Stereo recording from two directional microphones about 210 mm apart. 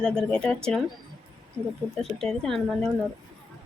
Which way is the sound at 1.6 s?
20° right (ahead or behind).